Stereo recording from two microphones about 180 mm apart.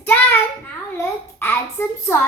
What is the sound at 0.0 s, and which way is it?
Child singing, 10° left (ahead or behind).